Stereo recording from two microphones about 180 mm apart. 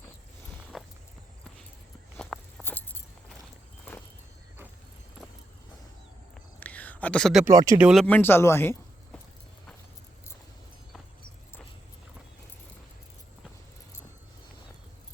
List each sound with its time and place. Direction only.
2.1 s walk: 5° left (ahead or behind)
6.3 s a sound: 10° left (ahead or behind)
7.4 s speech: 20° right (ahead or behind)
7.8 s speech: 5° right (ahead or behind)
8.0 s speech: 10° left (ahead or behind)